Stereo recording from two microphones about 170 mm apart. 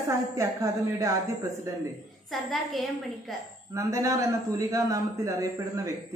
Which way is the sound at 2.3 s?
Centre (ahead or behind).